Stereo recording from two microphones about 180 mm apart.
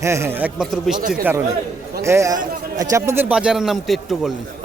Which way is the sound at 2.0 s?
15° right (ahead or behind).